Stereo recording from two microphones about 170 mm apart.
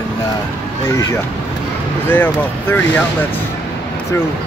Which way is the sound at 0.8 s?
20° left (ahead or behind).